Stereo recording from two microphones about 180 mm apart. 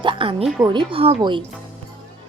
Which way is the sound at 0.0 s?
30° right (ahead or behind).